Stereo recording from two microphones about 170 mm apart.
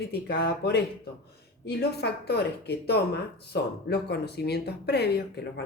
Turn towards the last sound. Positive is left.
turn(degrees=70)  # may be behind; listen again after turning